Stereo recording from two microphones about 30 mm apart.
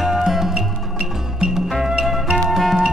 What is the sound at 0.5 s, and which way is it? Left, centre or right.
Music, right.